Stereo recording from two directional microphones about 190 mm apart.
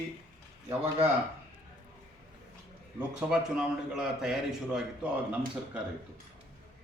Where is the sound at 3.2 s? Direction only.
5° right (ahead or behind).